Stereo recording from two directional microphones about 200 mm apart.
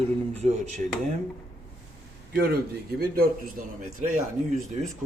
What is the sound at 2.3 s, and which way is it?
A man's voice, 55° right (ahead or behind).